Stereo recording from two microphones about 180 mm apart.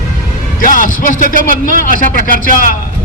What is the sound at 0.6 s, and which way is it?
Speech, 50° left (ahead or behind).